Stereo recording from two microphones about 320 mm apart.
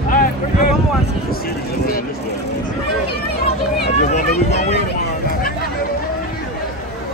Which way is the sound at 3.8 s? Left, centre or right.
Left.